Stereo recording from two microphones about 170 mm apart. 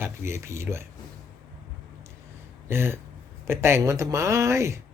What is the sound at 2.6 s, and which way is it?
Speech, 15° right (ahead or behind).